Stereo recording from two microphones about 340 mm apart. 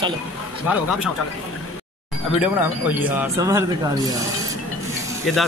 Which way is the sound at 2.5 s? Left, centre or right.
Centre.